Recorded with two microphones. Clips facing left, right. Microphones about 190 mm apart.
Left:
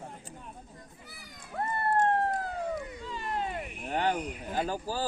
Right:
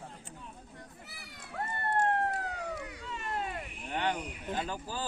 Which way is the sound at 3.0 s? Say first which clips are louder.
Left 1 dB; 30° left (ahead or behind).